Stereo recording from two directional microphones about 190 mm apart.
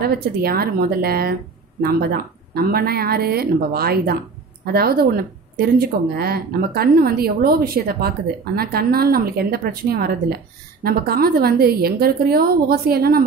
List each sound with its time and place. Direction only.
0.0 s speech: 55° right (ahead or behind)